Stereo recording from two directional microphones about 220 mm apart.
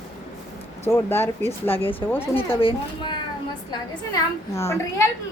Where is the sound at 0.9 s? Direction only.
10° left (ahead or behind).